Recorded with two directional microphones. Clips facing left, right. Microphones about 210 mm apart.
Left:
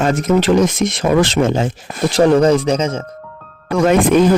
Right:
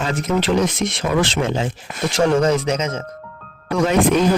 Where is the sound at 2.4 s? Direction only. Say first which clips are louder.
Left 5 dB; 35° left (ahead or behind).